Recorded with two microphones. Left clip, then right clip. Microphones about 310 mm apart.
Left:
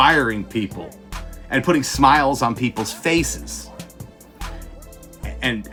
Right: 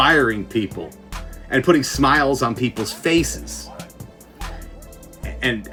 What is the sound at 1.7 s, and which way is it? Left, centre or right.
Speech, centre.